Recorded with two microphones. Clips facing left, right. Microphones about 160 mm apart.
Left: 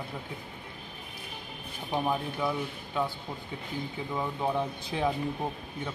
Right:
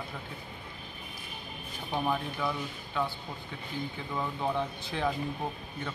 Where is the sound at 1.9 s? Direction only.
15° left (ahead or behind).